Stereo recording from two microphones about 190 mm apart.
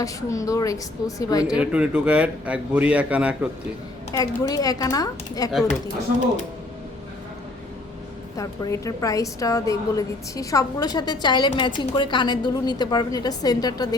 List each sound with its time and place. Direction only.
0.0 s a woman's voice: 15° left (ahead or behind)
1.5 s a man's voice: 5° right (ahead or behind)
4.1 s a woman's voice: 20° left (ahead or behind)
8.4 s a woman's voice: 15° left (ahead or behind)